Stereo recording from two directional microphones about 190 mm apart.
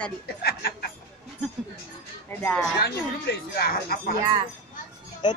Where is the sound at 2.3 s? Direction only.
10° left (ahead or behind).